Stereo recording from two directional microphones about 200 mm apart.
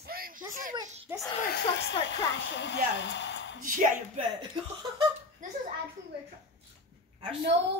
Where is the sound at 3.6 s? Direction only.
40° right (ahead or behind).